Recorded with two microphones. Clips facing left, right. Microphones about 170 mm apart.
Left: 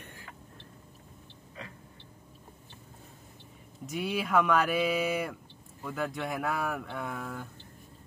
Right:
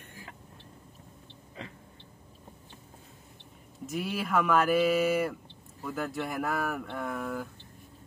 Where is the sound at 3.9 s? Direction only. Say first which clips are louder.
Left 1 dB; centre (ahead or behind).